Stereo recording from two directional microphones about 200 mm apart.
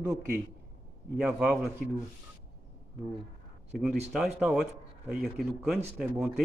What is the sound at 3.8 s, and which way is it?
Speech, centre (ahead or behind).